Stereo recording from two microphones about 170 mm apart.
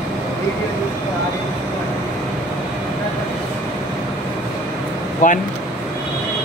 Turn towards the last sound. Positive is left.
turn(degrees=50)  # may be behind; listen again after turning